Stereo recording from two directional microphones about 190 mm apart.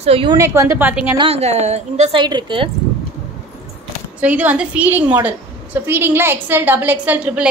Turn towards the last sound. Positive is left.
turn(degrees=-10)  # may be behind; listen again after turning